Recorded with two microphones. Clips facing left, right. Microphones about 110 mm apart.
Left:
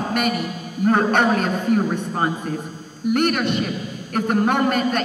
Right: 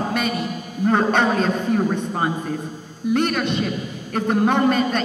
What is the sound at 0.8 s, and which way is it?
Speech, 5° left (ahead or behind).